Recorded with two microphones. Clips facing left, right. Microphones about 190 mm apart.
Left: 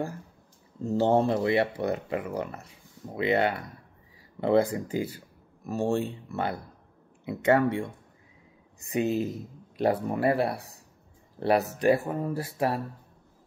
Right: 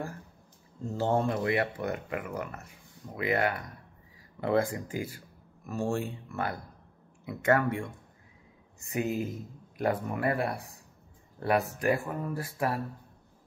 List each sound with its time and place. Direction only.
0.9 s speech: 30° left (ahead or behind)
8.9 s speech: 25° left (ahead or behind)